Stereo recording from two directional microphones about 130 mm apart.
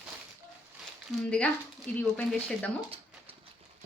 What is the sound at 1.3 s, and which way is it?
Speech, 10° left (ahead or behind).